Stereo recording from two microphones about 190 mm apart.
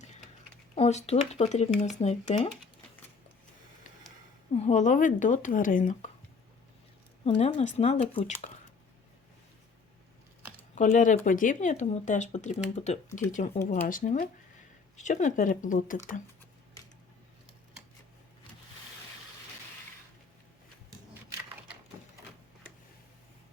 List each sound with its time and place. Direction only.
0.8 s speech: 35° left (ahead or behind)
4.5 s speech: 35° left (ahead or behind)
7.3 s speech: 35° left (ahead or behind)
10.8 s speech: 40° left (ahead or behind)
21.1 s a sound: 10° right (ahead or behind)